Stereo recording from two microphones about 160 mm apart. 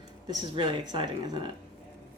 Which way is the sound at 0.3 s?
30° right (ahead or behind).